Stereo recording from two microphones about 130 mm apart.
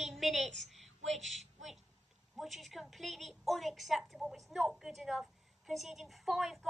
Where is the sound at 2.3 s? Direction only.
Centre (ahead or behind).